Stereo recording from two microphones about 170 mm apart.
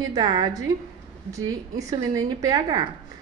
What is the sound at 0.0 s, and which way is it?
A woman's voice, 25° right (ahead or behind).